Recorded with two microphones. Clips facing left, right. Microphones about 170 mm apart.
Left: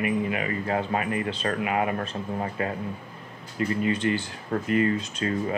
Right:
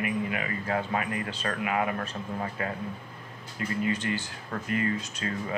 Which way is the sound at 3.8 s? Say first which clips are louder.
Left 4 dB; 30° left (ahead or behind).